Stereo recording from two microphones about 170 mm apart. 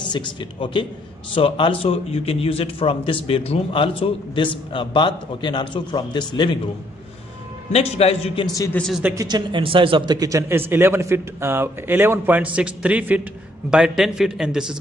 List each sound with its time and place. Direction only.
0.0 s a man's voice: 30° left (ahead or behind)
7.7 s a man's voice: 35° left (ahead or behind)
8.7 s a man's voice: 5° left (ahead or behind)
9.0 s a man's voice: 20° right (ahead or behind)